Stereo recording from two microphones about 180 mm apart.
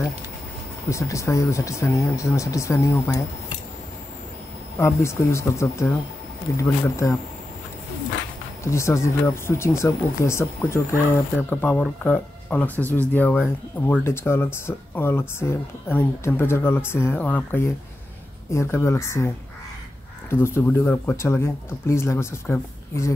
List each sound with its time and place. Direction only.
0.8 s speech: 15° left (ahead or behind)
4.7 s speech: 15° left (ahead or behind)
8.6 s speech: 15° left (ahead or behind)